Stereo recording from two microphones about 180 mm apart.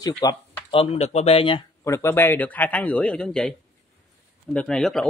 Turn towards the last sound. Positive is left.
turn(degrees=0)  # may be behind; listen again after turning